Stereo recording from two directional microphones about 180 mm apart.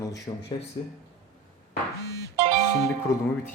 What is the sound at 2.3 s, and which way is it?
Music, 30° right (ahead or behind).